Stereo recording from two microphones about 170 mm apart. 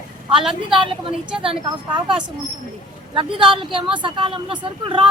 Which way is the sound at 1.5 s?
30° right (ahead or behind).